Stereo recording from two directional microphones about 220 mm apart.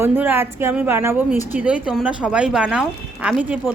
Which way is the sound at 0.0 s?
10° right (ahead or behind).